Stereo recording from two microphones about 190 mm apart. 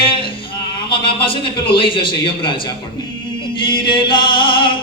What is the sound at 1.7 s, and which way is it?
Speech, 25° left (ahead or behind).